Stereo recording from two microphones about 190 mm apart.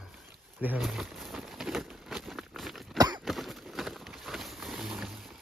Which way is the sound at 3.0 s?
20° right (ahead or behind).